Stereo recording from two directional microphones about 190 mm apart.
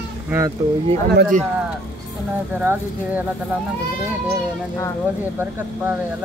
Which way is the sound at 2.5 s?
10° right (ahead or behind).